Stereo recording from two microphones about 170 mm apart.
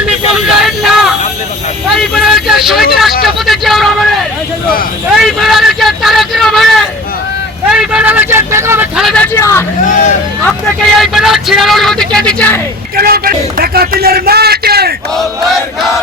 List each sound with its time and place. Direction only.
0.6 s vehicle: centre (ahead or behind)
3.2 s a sound: centre (ahead or behind)
5.2 s speech: centre (ahead or behind)
9.0 s speech: centre (ahead or behind)
9.2 s speech: 15° left (ahead or behind)
10.4 s speech: centre (ahead or behind)
13.0 s a man's voice: 60° right (ahead or behind)
15.1 s speech: centre (ahead or behind)